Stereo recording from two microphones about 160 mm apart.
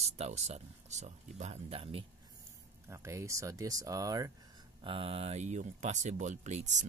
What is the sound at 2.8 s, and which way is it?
Speech, 20° right (ahead or behind).